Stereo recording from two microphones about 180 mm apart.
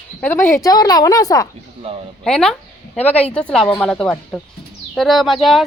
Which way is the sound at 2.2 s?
5° left (ahead or behind).